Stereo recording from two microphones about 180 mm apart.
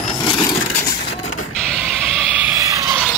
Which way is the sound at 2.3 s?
10° right (ahead or behind).